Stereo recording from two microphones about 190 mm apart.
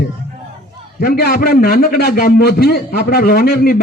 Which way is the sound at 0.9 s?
50° left (ahead or behind).